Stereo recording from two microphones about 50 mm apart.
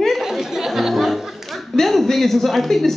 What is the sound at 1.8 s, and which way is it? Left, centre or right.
Speech, centre.